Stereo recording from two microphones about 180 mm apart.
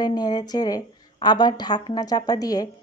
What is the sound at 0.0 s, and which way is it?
A woman's voice, 25° left (ahead or behind).